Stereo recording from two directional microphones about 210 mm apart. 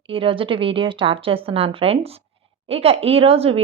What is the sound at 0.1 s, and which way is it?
A woman's voice, 25° right (ahead or behind).